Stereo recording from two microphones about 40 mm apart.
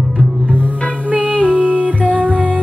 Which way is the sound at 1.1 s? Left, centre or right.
Right.